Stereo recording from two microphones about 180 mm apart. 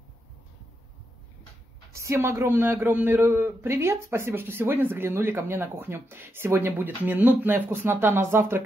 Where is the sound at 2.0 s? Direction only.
15° right (ahead or behind).